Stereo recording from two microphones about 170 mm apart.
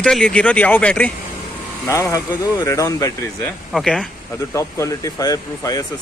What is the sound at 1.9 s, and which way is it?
Speech, 20° left (ahead or behind).